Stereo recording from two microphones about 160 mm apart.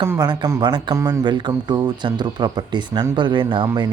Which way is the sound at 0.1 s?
20° right (ahead or behind).